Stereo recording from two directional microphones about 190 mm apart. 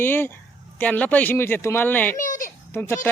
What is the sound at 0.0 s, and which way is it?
Speech, 10° left (ahead or behind).